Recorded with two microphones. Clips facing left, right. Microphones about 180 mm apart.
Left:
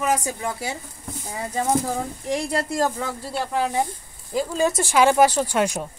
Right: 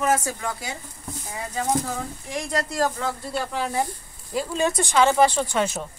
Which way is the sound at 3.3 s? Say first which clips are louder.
Left 4 dB; centre (ahead or behind).